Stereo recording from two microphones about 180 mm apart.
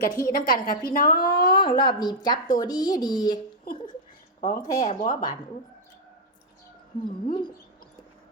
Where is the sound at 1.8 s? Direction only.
25° left (ahead or behind).